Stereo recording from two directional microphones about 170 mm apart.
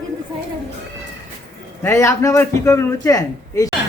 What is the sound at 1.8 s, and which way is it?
A man's voice, 15° left (ahead or behind).